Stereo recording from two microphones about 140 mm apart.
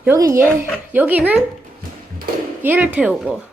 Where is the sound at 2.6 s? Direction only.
15° right (ahead or behind).